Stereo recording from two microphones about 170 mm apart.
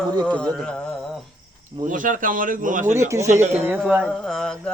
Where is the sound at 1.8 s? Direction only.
50° right (ahead or behind).